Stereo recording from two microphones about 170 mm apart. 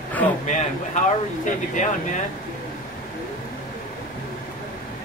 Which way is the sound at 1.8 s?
45° left (ahead or behind).